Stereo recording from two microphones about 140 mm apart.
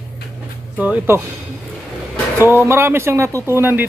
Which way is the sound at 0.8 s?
10° right (ahead or behind).